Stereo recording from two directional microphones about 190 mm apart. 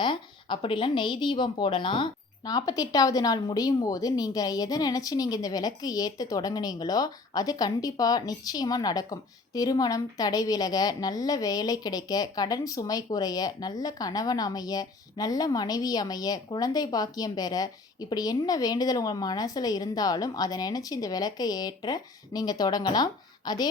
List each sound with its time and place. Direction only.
0.0 s speech: 25° left (ahead or behind)